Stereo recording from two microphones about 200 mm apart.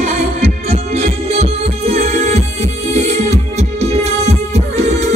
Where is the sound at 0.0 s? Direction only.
35° right (ahead or behind).